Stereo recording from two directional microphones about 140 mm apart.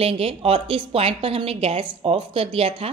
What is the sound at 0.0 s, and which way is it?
A woman's voice, 45° right (ahead or behind).